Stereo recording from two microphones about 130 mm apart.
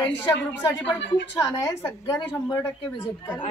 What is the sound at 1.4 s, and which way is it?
Speech, 20° left (ahead or behind).